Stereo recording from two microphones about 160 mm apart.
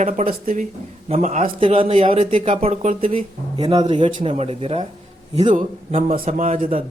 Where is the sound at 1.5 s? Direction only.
35° right (ahead or behind).